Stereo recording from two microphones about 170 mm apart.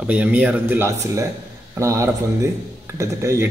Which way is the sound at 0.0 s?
5° right (ahead or behind).